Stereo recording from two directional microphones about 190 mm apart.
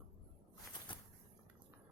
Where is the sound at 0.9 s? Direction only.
25° left (ahead or behind).